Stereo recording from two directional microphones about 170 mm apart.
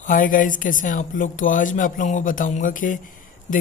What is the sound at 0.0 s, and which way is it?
Speech, 50° left (ahead or behind).